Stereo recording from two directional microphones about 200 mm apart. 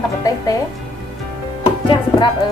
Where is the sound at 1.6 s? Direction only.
25° left (ahead or behind).